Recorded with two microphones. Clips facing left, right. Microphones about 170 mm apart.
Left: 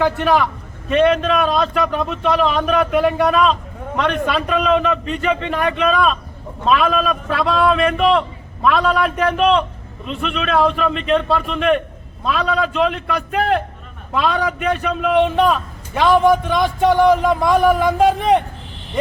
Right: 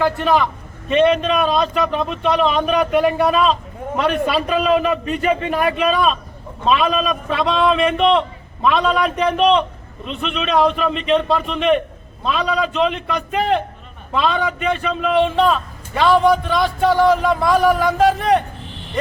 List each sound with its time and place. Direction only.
0.0 s a man's voice: centre (ahead or behind)
8.8 s a man's voice: 20° right (ahead or behind)
9.1 s a man's voice: 5° left (ahead or behind); by 18.4 s 20° left (ahead or behind)